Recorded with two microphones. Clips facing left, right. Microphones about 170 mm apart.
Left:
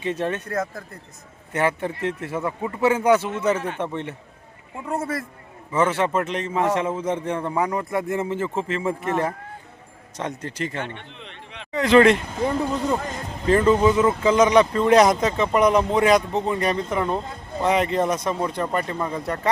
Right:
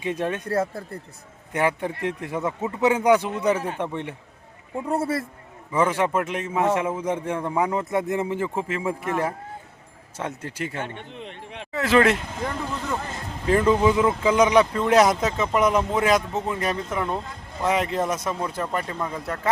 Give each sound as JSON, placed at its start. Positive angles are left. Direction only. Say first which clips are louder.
{"t": 0.0, "sound": "a man's voice", "louder": "left 1 dB", "side_deg": -10}
{"t": 0.4, "sound": "speech", "louder": "right 3 dB", "side_deg": -30}
{"t": 1.5, "sound": "a man's voice", "louder": "left 1 dB", "side_deg": -15}
{"t": 4.9, "sound": "a man's voice", "louder": "right 2 dB", "side_deg": -30}
{"t": 5.7, "sound": "a man's voice", "louder": "left 1 dB", "side_deg": -10}
{"t": 10.8, "sound": "speech", "louder": "right 2 dB", "side_deg": -45}
{"t": 11.7, "sound": "speech", "louder": "left 4 dB", "side_deg": -5}
{"t": 13.5, "sound": "a man's voice", "louder": "left 2 dB", "side_deg": -10}